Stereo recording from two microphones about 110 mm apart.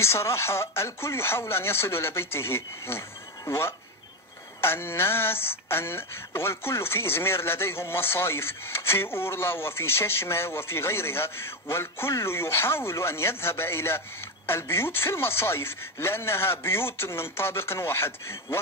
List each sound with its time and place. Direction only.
0.0 s speech: 25° left (ahead or behind)